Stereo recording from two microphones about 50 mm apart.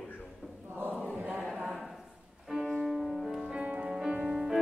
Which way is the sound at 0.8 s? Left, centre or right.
Right.